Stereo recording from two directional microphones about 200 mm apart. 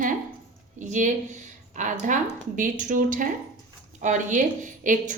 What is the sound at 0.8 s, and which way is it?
A woman's voice, 40° right (ahead or behind).